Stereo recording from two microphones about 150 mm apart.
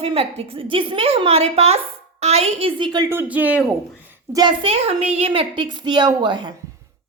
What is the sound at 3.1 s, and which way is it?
A man's voice, 10° right (ahead or behind).